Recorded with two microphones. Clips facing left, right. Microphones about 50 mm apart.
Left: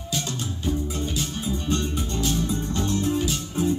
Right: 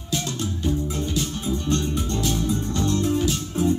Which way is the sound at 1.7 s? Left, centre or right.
Centre.